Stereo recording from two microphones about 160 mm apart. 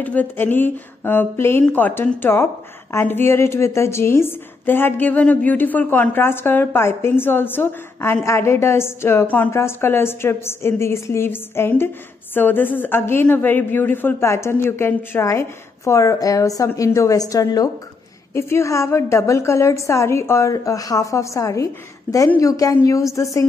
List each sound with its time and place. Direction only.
0.0 s a woman's voice: 10° left (ahead or behind)